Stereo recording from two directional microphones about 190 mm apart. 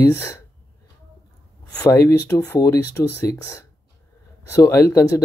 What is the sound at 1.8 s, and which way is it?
Speech, 15° left (ahead or behind).